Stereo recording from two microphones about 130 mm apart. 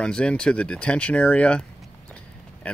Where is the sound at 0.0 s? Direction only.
5° left (ahead or behind).